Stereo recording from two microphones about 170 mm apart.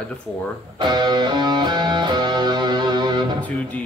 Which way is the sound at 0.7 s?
25° right (ahead or behind).